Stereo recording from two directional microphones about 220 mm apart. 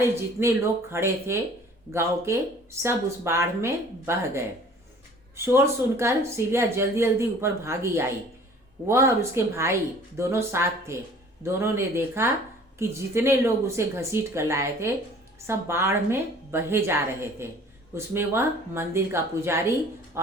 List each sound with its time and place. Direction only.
0.0 s a woman's voice: 10° right (ahead or behind)
5.5 s a woman's voice: 10° right (ahead or behind)